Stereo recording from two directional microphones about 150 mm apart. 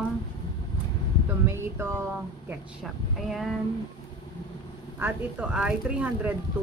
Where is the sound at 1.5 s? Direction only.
15° right (ahead or behind).